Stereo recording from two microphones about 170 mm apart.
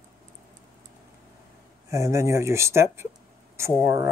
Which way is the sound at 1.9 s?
15° right (ahead or behind).